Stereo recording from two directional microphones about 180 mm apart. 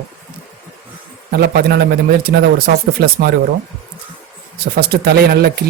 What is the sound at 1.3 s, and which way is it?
Speech, 60° right (ahead or behind).